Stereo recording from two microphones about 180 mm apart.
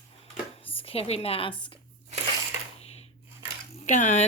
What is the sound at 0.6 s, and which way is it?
A woman's voice, 30° left (ahead or behind).